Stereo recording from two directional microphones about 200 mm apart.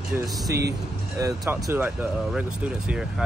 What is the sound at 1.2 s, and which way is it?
Speech, 15° right (ahead or behind).